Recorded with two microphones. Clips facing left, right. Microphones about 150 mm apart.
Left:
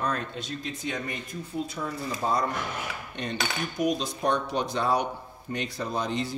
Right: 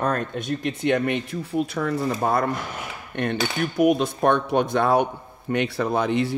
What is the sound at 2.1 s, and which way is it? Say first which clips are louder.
A man's voice: right 5 dB; 60° right (ahead or behind).